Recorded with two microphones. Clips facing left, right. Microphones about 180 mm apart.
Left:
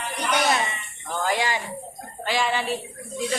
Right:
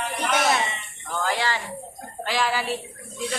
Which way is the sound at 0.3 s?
Centre (ahead or behind).